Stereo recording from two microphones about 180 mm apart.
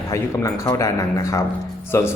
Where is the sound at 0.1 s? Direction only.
20° left (ahead or behind).